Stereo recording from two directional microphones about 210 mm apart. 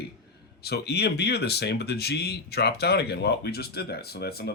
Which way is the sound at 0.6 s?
50° left (ahead or behind).